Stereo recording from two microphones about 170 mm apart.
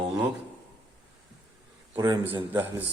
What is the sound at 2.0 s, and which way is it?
Speech, 20° right (ahead or behind).